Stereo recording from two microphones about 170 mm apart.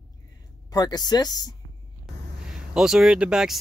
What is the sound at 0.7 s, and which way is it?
Speech, 25° left (ahead or behind).